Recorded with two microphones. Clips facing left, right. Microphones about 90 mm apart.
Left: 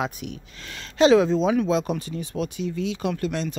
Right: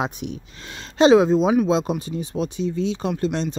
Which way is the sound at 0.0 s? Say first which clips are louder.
Right 2 dB; 25° right (ahead or behind).